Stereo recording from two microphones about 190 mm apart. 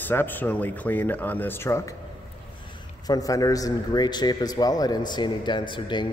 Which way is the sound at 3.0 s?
20° left (ahead or behind).